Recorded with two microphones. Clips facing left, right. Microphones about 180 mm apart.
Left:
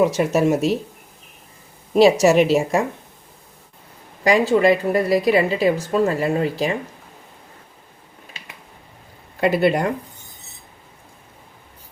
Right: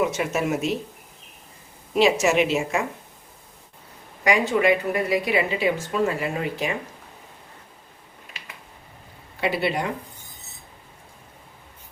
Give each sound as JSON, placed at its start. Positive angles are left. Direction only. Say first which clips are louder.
{"t": 0.0, "sound": "a woman's voice", "louder": "left 6 dB", "side_deg": 35}
{"t": 2.0, "sound": "a woman's voice", "louder": "left 6 dB", "side_deg": 35}
{"t": 4.2, "sound": "a woman's voice", "louder": "left 5 dB", "side_deg": 35}
{"t": 9.4, "sound": "speech", "louder": "left 7 dB", "side_deg": 45}